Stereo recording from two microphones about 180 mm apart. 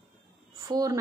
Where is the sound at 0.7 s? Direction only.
20° right (ahead or behind).